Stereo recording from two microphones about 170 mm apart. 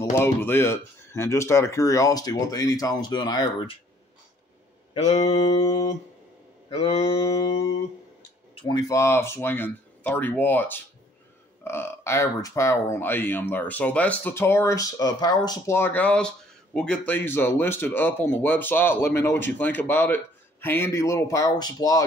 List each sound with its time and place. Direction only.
0.1 s speech: 15° left (ahead or behind)
4.9 s mantra: 40° left (ahead or behind)
5.3 s speech: 20° left (ahead or behind)
6.7 s mantra: 35° left (ahead or behind)
7.2 s speech: 20° left (ahead or behind)
8.5 s speech: 25° left (ahead or behind)